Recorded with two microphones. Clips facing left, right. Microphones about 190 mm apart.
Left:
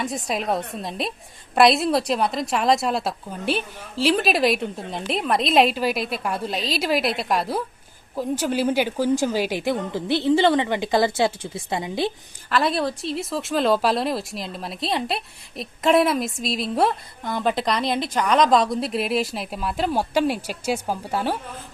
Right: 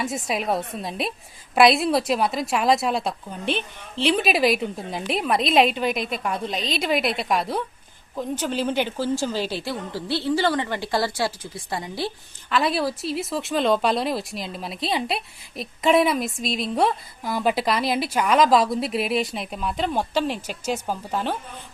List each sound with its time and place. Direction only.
0.0 s a woman's voice: centre (ahead or behind); by 12.1 s 20° left (ahead or behind)
12.5 s speech: centre (ahead or behind)